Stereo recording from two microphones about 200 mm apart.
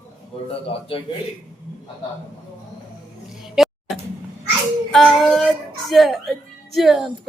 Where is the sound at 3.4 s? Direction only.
Centre (ahead or behind).